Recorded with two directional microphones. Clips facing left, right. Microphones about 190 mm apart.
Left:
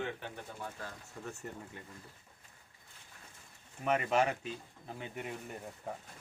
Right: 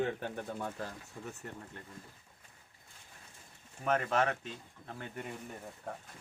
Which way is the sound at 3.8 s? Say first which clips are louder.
Even; 5° left (ahead or behind).